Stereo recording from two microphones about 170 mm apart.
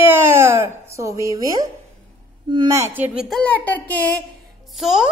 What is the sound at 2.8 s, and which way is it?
Speech, 10° right (ahead or behind).